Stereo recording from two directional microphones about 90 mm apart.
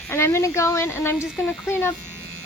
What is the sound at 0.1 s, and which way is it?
Speech, 30° left (ahead or behind).